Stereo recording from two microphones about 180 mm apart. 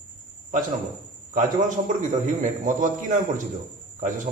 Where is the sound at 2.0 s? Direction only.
45° right (ahead or behind).